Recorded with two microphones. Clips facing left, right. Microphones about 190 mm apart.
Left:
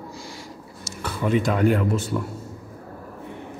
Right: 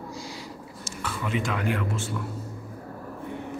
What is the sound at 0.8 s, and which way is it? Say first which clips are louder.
Speech: left 6 dB; 40° left (ahead or behind).